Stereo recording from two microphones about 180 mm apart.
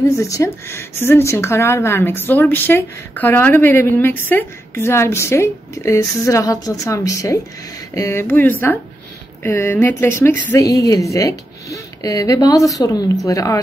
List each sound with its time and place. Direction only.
0.2 s speech: 15° left (ahead or behind)